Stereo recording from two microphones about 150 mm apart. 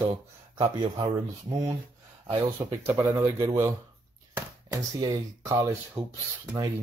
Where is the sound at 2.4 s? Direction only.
25° right (ahead or behind).